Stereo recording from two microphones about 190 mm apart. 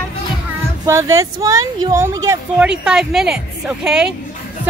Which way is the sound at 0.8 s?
15° right (ahead or behind).